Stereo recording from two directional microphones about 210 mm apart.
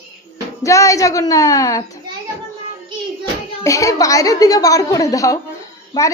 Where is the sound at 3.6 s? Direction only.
15° left (ahead or behind).